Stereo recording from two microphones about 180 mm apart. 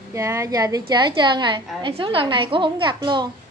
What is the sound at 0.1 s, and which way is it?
A woman's voice, 15° right (ahead or behind).